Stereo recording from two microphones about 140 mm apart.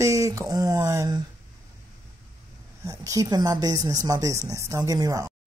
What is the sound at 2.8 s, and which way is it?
A woman's voice, 25° right (ahead or behind).